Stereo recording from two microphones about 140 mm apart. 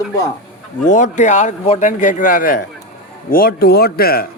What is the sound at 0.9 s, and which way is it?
A man's voice, 60° left (ahead or behind).